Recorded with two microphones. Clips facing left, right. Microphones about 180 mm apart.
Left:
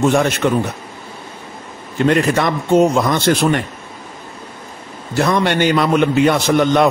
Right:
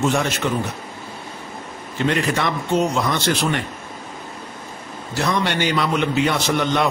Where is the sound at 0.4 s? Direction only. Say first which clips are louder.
Left 8 dB; 55° left (ahead or behind).